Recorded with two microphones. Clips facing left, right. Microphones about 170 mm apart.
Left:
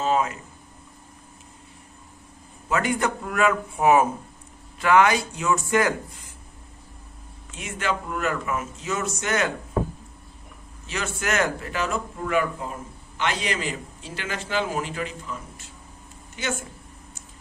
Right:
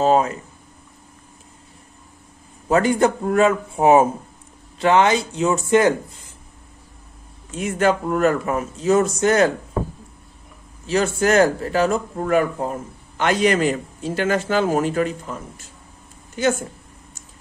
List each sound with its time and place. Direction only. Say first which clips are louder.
0.0 s speech: right 6 dB; 35° right (ahead or behind)
2.7 s speech: right 7 dB; 35° right (ahead or behind)
7.5 s speech: right 9 dB; 40° right (ahead or behind)
10.9 s a man's voice: right 10 dB; 35° right (ahead or behind)